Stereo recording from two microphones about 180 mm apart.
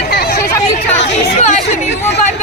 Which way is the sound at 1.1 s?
40° left (ahead or behind).